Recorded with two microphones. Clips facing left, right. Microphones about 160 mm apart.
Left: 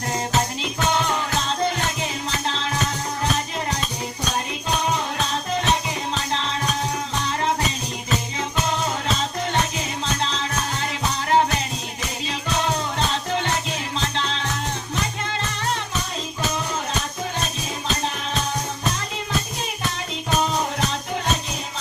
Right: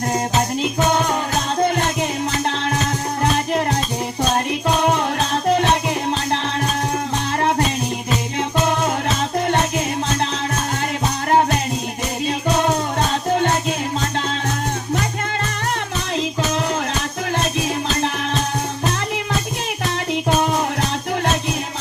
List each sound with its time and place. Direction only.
0.6 s music: 45° right (ahead or behind)
2.5 s music: 55° right (ahead or behind)
4.8 s music: 60° right (ahead or behind)
8.4 s music: 55° right (ahead or behind)
13.3 s music: 50° right (ahead or behind)